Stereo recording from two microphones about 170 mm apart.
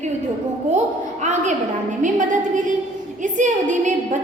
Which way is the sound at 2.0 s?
45° right (ahead or behind).